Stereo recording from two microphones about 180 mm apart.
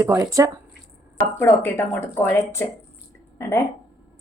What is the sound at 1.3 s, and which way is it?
Speech, 10° left (ahead or behind).